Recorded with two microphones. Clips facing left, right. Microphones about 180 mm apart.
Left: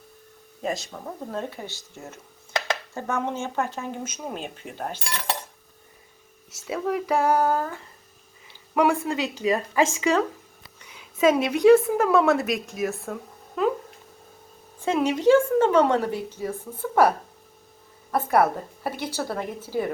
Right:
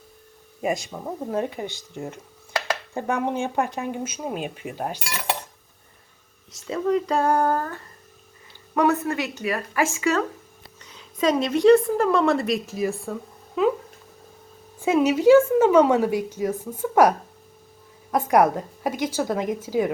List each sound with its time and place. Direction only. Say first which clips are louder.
0.9 s a woman's voice: right 5 dB; 10° right (ahead or behind)
3.2 s a woman's voice: right 3 dB; 15° right (ahead or behind)
6.6 s a woman's voice: right 4 dB; 5° left (ahead or behind)
13.6 s a sound: right 3 dB; centre (ahead or behind)
14.9 s a woman's voice: right 4 dB; 5° right (ahead or behind)